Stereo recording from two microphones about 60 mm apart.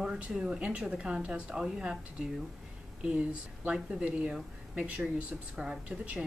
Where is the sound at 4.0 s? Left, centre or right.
Right.